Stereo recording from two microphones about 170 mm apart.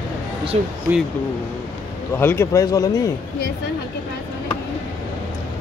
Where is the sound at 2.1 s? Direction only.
15° left (ahead or behind).